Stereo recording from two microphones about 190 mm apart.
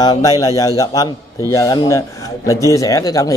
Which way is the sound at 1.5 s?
20° left (ahead or behind).